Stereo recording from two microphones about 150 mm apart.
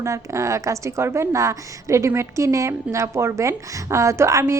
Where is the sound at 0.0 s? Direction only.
20° right (ahead or behind).